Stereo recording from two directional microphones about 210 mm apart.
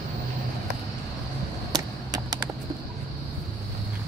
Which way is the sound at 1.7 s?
20° right (ahead or behind).